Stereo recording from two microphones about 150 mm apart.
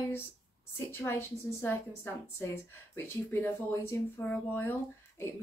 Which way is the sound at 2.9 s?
15° left (ahead or behind).